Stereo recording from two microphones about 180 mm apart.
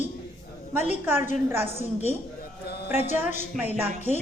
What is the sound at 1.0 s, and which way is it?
Speech, 10° right (ahead or behind).